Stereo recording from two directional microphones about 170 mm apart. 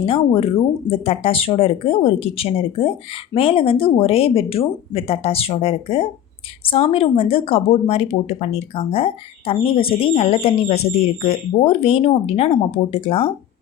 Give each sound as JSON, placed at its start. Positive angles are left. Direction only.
{"t": 0.0, "sound": "speech", "side_deg": 35}